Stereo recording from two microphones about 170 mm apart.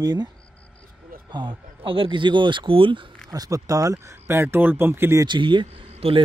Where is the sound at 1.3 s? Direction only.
25° right (ahead or behind).